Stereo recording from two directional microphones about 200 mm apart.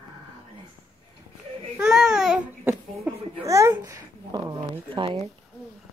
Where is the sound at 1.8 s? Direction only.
5° right (ahead or behind); by 4.5 s 20° right (ahead or behind).